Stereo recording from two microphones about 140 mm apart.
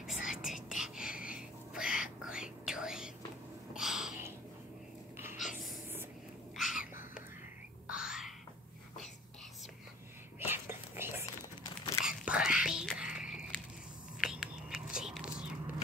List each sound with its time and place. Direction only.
0.0 s whispering: 5° right (ahead or behind)
3.7 s snort: 5° right (ahead or behind)
6.5 s cat: centre (ahead or behind)
7.9 s a sound: 5° right (ahead or behind)
10.4 s whispering: 15° right (ahead or behind)
14.2 s biting: 5° right (ahead or behind)